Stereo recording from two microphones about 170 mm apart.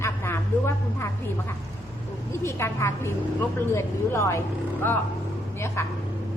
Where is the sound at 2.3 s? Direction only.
15° left (ahead or behind).